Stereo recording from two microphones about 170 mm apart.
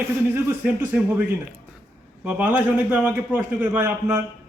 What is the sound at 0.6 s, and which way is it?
Speech, 5° right (ahead or behind).